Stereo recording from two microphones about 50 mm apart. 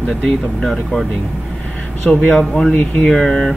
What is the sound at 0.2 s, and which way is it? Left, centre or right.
Speech, centre.